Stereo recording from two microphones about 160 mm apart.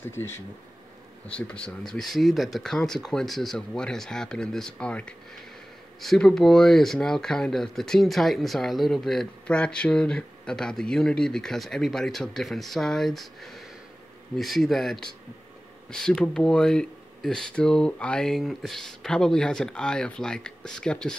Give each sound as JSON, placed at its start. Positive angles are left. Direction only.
{"t": 0.1, "sound": "speech", "side_deg": 15}
{"t": 1.5, "sound": "speech", "side_deg": 5}